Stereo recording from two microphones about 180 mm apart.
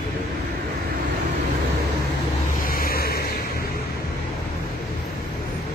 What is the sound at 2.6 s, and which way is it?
Vehicle, 55° left (ahead or behind).